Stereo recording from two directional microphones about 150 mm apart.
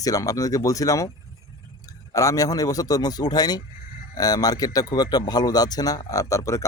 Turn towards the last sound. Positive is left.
turn(degrees=20)  # may be behind; listen again after turning